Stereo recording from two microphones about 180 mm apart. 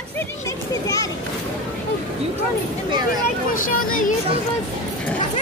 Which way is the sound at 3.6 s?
50° left (ahead or behind).